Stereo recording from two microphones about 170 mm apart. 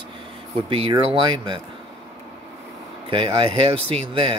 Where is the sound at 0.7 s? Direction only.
30° right (ahead or behind).